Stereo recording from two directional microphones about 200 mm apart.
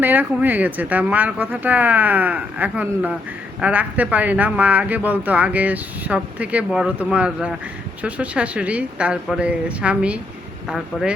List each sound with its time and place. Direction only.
0.0 s speech: 10° right (ahead or behind)